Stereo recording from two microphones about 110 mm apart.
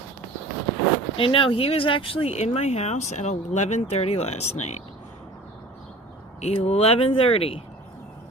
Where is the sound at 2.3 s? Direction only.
85° left.